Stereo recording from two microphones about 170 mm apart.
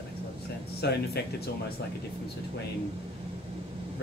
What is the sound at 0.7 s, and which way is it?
Speech, 70° left (ahead or behind).